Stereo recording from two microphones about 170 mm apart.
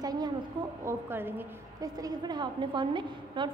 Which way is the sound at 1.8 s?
25° right (ahead or behind).